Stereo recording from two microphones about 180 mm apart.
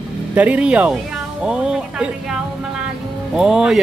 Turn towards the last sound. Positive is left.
turn(degrees=-5)  # may be behind; listen again after turning